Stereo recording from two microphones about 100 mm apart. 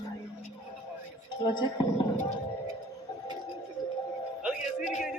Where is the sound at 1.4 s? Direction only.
50° left (ahead or behind).